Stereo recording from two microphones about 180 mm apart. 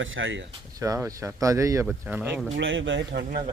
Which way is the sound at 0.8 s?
20° right (ahead or behind).